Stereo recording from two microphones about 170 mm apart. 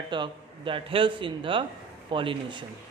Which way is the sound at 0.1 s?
30° right (ahead or behind).